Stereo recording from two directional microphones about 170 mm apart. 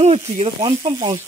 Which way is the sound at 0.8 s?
20° right (ahead or behind).